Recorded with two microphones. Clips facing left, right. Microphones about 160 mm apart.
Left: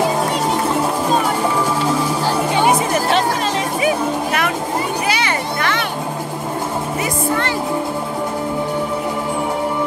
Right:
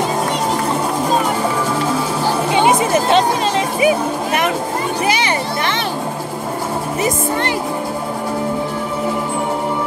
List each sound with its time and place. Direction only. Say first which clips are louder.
2.2 s music: right 3 dB; 20° right (ahead or behind)
5.0 s children playing: right 2 dB; 20° right (ahead or behind)